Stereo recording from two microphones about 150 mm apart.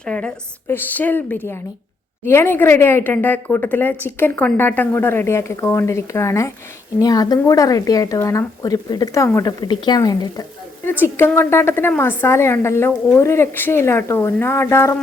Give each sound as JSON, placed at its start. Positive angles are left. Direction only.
{"t": 0.0, "sound": "a woman's voice", "side_deg": 5}